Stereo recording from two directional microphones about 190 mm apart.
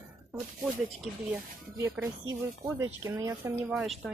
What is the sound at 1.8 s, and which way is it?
Speech, 15° right (ahead or behind).